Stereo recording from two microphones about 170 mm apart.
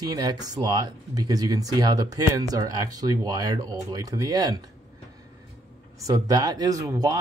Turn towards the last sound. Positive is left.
turn(degrees=-20)  # may be behind; listen again after turning